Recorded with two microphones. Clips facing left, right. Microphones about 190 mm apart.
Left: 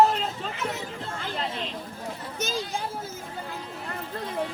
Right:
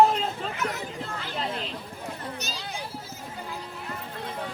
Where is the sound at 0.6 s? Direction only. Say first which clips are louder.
Right 1 dB; 25° left (ahead or behind).